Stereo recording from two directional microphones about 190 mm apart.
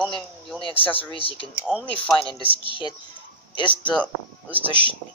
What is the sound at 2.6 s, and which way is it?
Speech, 25° left (ahead or behind).